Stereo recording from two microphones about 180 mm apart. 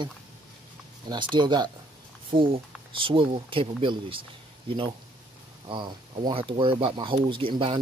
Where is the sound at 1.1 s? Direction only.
25° right (ahead or behind).